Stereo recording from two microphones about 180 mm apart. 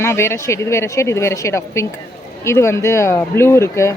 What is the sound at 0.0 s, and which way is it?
A woman's voice, 15° left (ahead or behind).